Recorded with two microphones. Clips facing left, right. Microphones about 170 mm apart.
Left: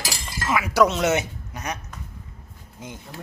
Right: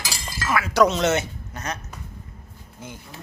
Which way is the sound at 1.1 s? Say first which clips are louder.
Even; 15° left (ahead or behind).